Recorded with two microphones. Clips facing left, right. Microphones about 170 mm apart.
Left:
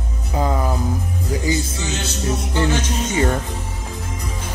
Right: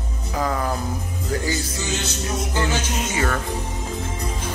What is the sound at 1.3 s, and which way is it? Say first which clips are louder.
Speech: left 3 dB; 15° left (ahead or behind).